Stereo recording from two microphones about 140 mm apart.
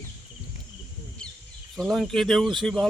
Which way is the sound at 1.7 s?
Centre (ahead or behind).